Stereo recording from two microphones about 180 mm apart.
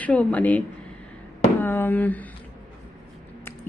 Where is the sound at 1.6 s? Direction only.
10° left (ahead or behind).